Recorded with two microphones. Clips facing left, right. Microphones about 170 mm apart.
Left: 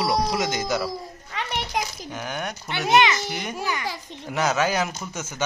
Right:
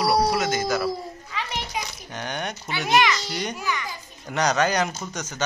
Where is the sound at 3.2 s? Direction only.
50° left (ahead or behind).